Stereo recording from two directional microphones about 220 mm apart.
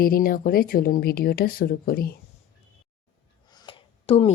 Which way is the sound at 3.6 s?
25° left (ahead or behind).